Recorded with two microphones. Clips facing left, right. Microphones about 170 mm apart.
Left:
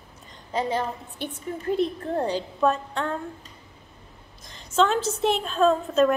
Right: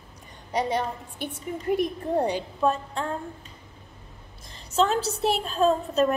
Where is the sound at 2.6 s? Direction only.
30° right (ahead or behind).